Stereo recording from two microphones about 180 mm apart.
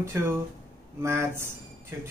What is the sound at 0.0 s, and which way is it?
Speech, 15° right (ahead or behind).